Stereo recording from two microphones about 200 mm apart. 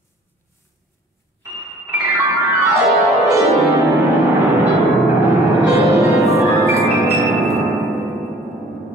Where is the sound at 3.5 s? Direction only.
15° right (ahead or behind).